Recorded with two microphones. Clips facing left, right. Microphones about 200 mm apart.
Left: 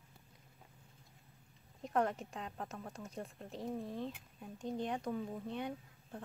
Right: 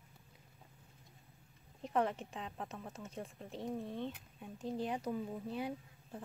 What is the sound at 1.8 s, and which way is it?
Speech, centre (ahead or behind).